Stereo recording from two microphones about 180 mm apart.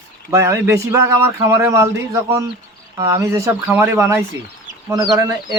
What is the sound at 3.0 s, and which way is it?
Speech, 15° right (ahead or behind).